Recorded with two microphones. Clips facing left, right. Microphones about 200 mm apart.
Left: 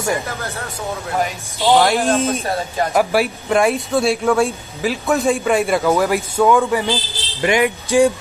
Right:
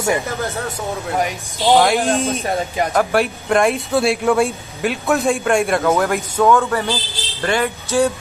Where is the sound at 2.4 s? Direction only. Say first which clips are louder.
Right 1 dB; 15° right (ahead or behind).